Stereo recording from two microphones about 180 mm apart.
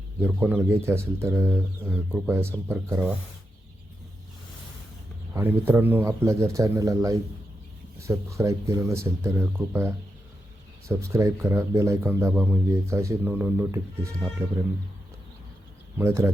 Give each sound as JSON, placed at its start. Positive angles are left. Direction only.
{"t": 0.2, "sound": "speech", "side_deg": -10}
{"t": 5.3, "sound": "speech", "side_deg": -10}
{"t": 16.0, "sound": "speech", "side_deg": -15}